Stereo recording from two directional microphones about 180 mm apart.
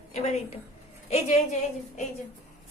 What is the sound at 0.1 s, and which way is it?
A woman's voice, 35° left (ahead or behind).